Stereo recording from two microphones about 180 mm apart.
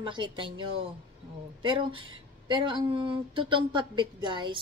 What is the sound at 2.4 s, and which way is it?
Speech, 25° right (ahead or behind).